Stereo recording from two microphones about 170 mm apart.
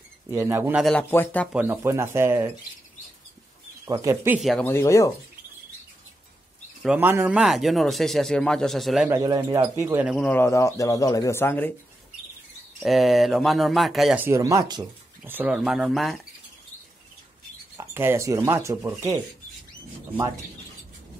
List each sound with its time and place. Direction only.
0.3 s speech: 15° right (ahead or behind)
0.8 s speech: 10° left (ahead or behind)
1.5 s speech: 10° right (ahead or behind)
3.9 s speech: 15° right (ahead or behind)
4.4 s speech: centre (ahead or behind)
4.6 s speech: 15° left (ahead or behind)
6.8 s speech: 10° right (ahead or behind)
9.1 s speech: 20° right (ahead or behind)
10.0 s speech: centre (ahead or behind)
10.3 s speech: 15° left (ahead or behind)
12.8 s speech: centre (ahead or behind)
14.2 s speech: 15° right (ahead or behind); by 16.2 s centre (ahead or behind)
17.7 s speech: 15° right (ahead or behind)